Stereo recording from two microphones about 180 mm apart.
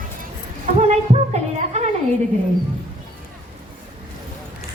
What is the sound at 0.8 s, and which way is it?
Music, 35° right (ahead or behind).